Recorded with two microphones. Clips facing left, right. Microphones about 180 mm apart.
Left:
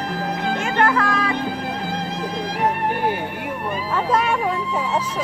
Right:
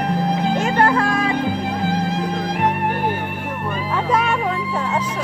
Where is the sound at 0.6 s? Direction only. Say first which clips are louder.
Right 1 dB; 35° right (ahead or behind).